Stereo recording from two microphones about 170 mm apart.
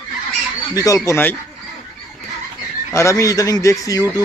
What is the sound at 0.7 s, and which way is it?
Speech, 20° left (ahead or behind).